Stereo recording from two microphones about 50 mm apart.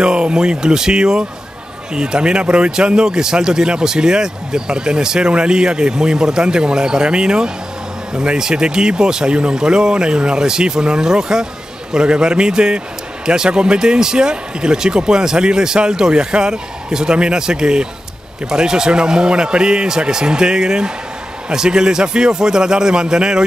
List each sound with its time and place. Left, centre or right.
0.0 s a man's voice: centre